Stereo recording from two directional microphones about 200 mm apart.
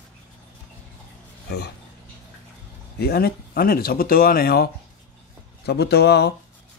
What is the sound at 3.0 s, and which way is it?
Speech, 50° left (ahead or behind).